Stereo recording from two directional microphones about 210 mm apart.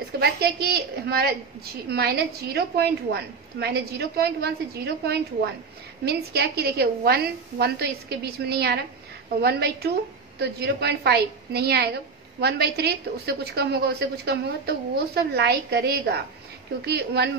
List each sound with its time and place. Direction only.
0.2 s a woman's voice: 50° right (ahead or behind)